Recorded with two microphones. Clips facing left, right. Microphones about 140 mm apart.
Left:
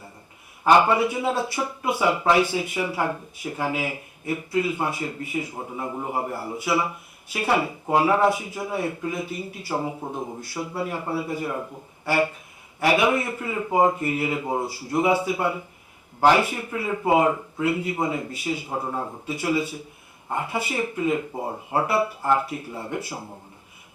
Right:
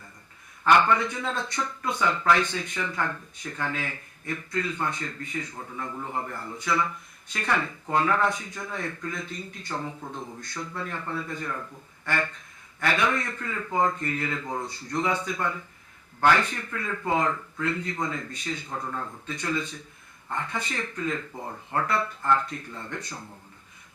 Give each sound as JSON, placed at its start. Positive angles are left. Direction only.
{"t": 0.6, "sound": "speech", "side_deg": 10}
{"t": 5.5, "sound": "speech", "side_deg": 25}
{"t": 6.1, "sound": "speech", "side_deg": 15}
{"t": 18.8, "sound": "speech", "side_deg": 25}
{"t": 19.2, "sound": "speech", "side_deg": 10}
{"t": 21.3, "sound": "speech", "side_deg": 30}
{"t": 21.8, "sound": "speech", "side_deg": 10}